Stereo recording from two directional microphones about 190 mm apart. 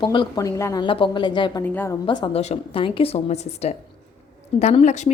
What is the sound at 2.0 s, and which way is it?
A woman's voice, 25° left (ahead or behind).